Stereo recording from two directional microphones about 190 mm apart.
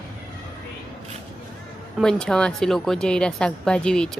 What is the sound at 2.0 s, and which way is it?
Speech, 5° left (ahead or behind).